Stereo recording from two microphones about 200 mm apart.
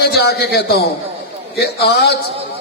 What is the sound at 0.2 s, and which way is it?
A man's voice, 55° left (ahead or behind).